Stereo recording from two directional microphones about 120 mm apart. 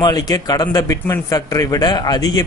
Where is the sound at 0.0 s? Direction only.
35° left (ahead or behind).